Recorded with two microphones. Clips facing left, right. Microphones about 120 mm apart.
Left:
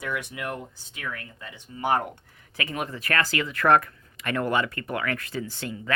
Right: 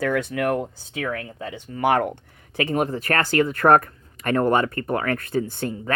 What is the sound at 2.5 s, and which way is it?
Speech, 40° right (ahead or behind).